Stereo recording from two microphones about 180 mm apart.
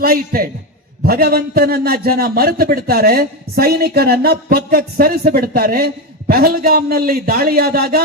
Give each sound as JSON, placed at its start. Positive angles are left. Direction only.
{"t": 0.0, "sound": "a man's voice", "side_deg": -55}